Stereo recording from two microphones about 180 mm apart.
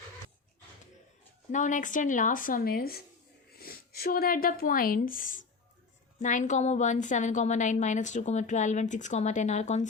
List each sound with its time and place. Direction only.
1.5 s a woman's voice: 45° left (ahead or behind)